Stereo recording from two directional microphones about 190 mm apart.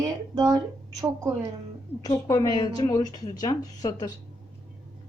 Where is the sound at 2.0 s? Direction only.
20° left (ahead or behind).